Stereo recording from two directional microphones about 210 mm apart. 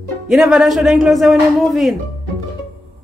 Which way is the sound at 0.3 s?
Centre (ahead or behind).